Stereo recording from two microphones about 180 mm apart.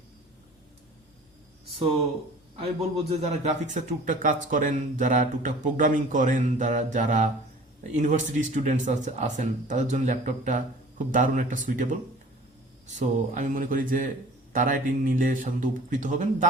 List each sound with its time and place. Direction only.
3.1 s speech: 40° right (ahead or behind)